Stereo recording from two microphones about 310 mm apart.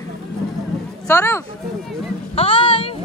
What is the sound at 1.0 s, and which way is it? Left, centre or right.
Speech, centre.